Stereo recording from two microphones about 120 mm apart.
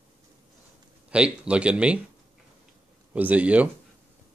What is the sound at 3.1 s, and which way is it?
Speech, 10° right (ahead or behind).